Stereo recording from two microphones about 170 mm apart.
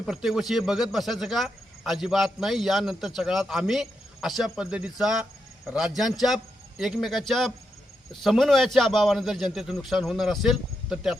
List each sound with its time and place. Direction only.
0.0 s speech: centre (ahead or behind)